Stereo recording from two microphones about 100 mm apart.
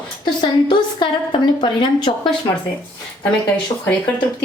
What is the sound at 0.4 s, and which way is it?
A woman's voice, 50° left (ahead or behind).